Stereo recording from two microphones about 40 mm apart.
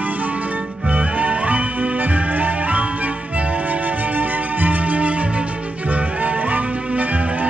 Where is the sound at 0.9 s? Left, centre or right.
Right.